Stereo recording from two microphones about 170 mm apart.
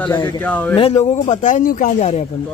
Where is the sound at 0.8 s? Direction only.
40° left (ahead or behind).